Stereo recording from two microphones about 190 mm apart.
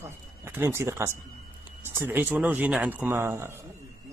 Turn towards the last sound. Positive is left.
turn(degrees=-15)  # may be behind; listen again after turning